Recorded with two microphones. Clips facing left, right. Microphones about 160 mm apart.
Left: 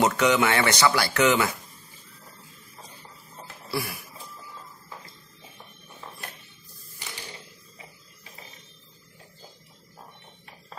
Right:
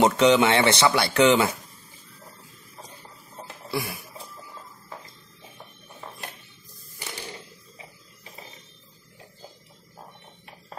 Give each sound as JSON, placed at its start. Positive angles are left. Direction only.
{"t": 0.0, "sound": "speech", "side_deg": -25}
{"t": 3.7, "sound": "speech", "side_deg": -20}